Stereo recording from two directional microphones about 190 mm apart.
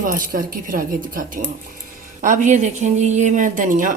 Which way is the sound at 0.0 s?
45° right (ahead or behind).